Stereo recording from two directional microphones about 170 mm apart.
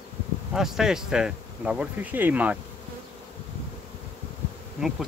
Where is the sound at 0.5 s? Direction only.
Centre (ahead or behind).